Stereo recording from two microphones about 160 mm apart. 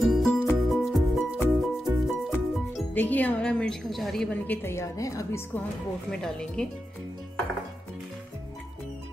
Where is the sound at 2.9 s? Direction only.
10° left (ahead or behind).